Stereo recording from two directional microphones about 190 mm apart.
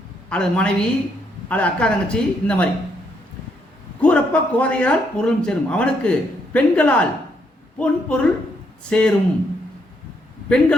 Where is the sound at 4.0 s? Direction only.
5° left (ahead or behind).